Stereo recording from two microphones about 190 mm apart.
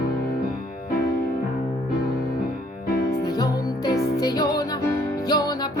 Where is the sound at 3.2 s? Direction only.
20° left (ahead or behind).